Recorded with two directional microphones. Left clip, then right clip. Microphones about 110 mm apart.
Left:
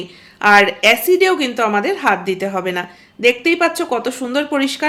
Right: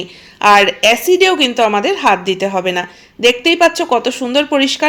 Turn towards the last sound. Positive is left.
turn(degrees=-20)  # may be behind; listen again after turning